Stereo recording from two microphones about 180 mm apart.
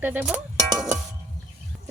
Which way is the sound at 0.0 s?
10° right (ahead or behind).